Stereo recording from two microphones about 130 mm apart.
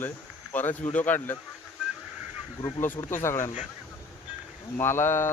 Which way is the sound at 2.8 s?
20° left (ahead or behind).